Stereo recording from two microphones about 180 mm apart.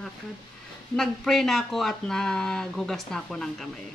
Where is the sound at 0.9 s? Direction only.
Centre (ahead or behind).